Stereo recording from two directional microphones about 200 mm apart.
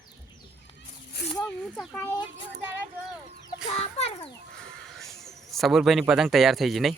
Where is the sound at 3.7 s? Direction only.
30° left (ahead or behind).